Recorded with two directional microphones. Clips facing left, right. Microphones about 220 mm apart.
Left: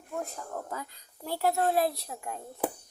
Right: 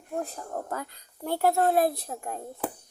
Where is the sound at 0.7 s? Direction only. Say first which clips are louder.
Right 4 dB; 60° right (ahead or behind).